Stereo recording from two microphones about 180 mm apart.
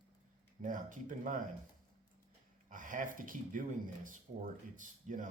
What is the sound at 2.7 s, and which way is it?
Speech, 45° right (ahead or behind).